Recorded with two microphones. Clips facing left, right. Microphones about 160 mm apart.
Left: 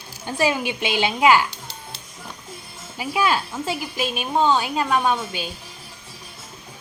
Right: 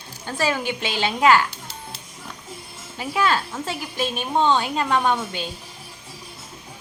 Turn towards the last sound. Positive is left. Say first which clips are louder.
# even
turn(degrees=10)  # may be behind; listen again after turning